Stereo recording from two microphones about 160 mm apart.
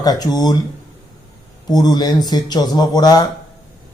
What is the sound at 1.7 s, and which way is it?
Speech, 25° left (ahead or behind).